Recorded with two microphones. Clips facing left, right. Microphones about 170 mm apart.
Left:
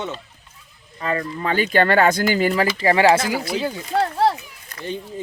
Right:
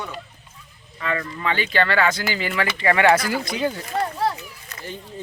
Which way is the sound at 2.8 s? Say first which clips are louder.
Left 1 dB; 30° left (ahead or behind).